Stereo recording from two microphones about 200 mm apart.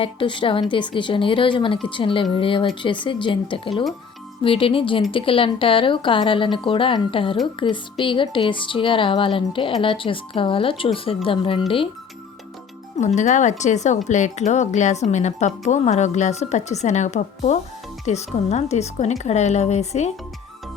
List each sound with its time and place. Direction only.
0.0 s speech: 25° left (ahead or behind)
13.0 s speech: 35° left (ahead or behind)